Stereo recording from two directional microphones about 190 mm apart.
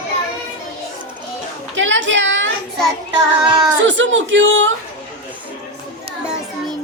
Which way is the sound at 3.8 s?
75° right (ahead or behind).